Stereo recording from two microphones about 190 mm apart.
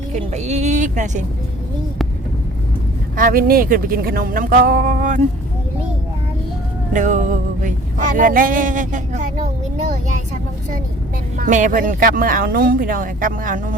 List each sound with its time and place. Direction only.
0.1 s a woman's voice: 35° right (ahead or behind)
3.2 s speech: 50° right (ahead or behind)
6.9 s speech: 40° right (ahead or behind)
11.3 s speech: 40° right (ahead or behind)